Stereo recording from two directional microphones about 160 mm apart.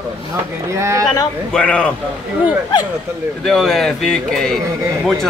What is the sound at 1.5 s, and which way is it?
Speech, 5° left (ahead or behind).